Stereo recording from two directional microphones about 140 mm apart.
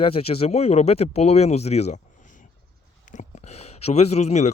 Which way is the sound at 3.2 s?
50° left (ahead or behind).